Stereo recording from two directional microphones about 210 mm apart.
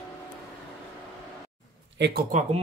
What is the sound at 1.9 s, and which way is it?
Speech, 55° right (ahead or behind).